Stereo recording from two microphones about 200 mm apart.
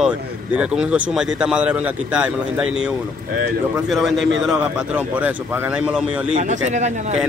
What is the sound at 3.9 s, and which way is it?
Speech, centre (ahead or behind).